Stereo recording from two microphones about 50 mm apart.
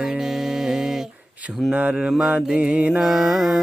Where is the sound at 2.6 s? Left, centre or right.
Right.